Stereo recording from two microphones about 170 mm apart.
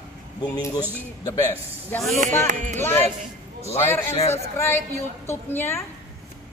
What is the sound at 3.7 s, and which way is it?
A woman's voice, 15° left (ahead or behind).